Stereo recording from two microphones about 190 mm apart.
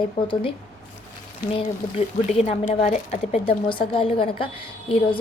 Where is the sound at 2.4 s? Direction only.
35° left (ahead or behind).